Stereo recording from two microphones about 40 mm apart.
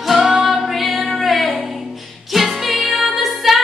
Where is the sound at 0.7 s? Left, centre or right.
Centre.